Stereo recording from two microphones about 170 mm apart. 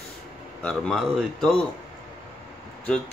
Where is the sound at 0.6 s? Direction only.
5° left (ahead or behind).